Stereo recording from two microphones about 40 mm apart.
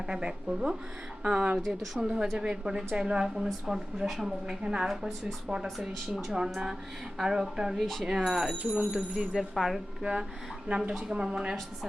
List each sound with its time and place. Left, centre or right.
0.0 s speech: right
1.6 s a woman's voice: centre
2.0 s a woman's voice: centre
4.6 s speech: right
5.6 s a woman's voice: centre
6.3 s a woman's voice: centre
7.8 s a woman's voice: centre
8.0 s a woman's voice: centre
8.8 s speech: right
9.4 s a woman's voice: centre
10.0 s speech: right
10.7 s speech: right
11.1 s speech: centre